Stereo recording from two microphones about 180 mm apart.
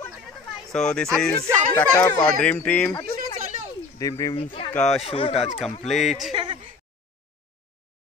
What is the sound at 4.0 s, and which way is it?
Speech, 20° left (ahead or behind).